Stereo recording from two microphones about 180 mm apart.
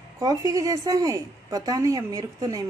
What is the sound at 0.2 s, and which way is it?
A woman's voice, 20° right (ahead or behind).